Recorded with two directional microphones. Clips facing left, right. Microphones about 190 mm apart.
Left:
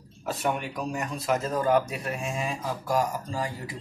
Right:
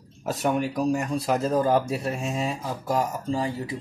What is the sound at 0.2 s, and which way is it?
Speech, 40° right (ahead or behind).